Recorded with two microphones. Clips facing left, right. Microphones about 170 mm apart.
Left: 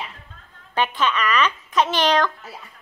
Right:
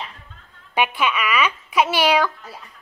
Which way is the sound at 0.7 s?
10° right (ahead or behind).